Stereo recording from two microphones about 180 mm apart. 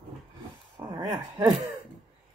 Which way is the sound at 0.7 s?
25° right (ahead or behind).